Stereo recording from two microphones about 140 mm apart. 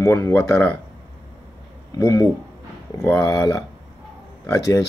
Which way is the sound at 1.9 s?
20° left (ahead or behind).